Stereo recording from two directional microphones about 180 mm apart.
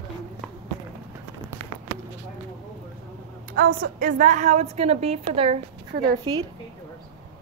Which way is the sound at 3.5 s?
55° right (ahead or behind).